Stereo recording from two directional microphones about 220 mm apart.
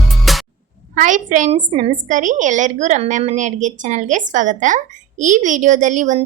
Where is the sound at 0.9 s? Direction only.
35° right (ahead or behind).